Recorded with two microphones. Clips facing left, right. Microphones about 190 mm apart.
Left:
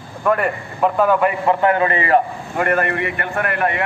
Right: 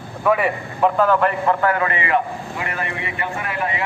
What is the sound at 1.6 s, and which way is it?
Speech, 25° left (ahead or behind).